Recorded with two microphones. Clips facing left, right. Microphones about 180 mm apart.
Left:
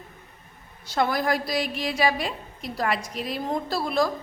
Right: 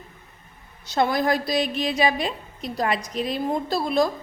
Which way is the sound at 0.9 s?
20° right (ahead or behind).